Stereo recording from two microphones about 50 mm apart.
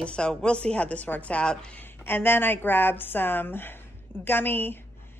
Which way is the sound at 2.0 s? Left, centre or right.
Left.